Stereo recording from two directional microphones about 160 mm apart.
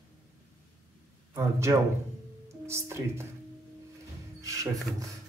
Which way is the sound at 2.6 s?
15° right (ahead or behind).